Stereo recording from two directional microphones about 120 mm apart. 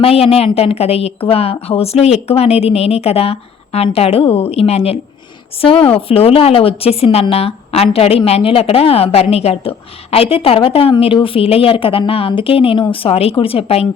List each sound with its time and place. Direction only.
0.0 s a woman's voice: 55° left (ahead or behind)